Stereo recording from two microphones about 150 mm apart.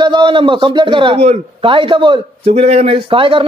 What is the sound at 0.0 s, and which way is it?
A man's voice, 30° right (ahead or behind).